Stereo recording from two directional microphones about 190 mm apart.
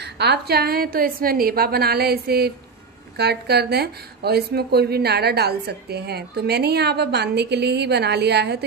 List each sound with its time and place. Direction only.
0.0 s a woman's voice: 60° right (ahead or behind)